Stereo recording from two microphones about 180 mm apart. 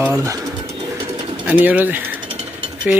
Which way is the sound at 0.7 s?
35° right (ahead or behind).